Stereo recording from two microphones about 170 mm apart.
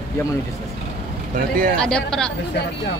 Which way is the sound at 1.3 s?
55° right (ahead or behind).